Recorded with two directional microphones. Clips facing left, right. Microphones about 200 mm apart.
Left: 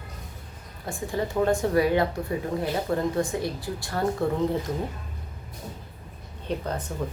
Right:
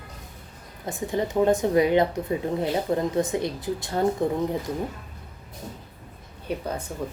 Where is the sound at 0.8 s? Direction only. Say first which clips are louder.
Right 2 dB; 20° right (ahead or behind).